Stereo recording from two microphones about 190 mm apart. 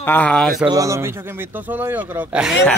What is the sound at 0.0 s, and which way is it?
Speech, 10° left (ahead or behind).